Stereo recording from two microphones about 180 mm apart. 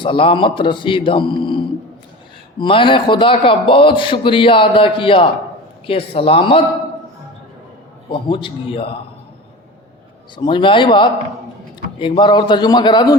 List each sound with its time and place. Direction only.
0.0 s a man's voice: 30° left (ahead or behind)
8.1 s a man's voice: 25° left (ahead or behind)
10.3 s a man's voice: 25° left (ahead or behind)